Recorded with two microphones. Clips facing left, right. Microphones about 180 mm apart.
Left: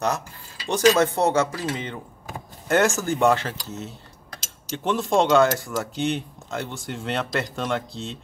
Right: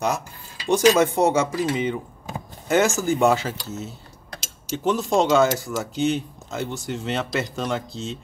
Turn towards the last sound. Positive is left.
turn(degrees=-5)  # may be behind; listen again after turning